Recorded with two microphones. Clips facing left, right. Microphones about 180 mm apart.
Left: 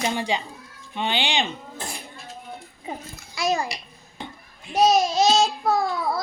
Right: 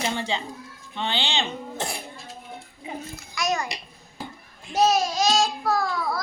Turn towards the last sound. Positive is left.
turn(degrees=25)  # may be behind; listen again after turning